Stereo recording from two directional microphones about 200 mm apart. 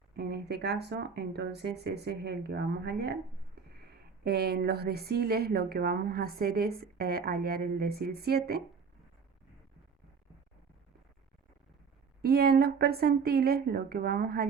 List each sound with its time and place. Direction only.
0.2 s a woman's voice: 55° right (ahead or behind)
12.2 s a woman's voice: 50° right (ahead or behind)